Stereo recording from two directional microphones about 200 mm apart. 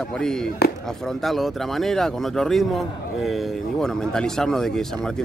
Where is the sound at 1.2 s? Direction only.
Centre (ahead or behind).